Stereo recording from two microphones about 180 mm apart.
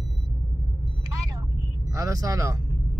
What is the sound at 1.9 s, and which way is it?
Speech, 20° right (ahead or behind).